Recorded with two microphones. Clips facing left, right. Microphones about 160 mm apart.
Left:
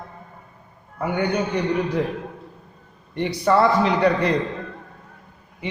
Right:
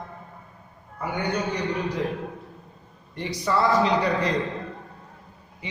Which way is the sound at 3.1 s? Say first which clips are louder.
Left 6 dB; 60° left (ahead or behind).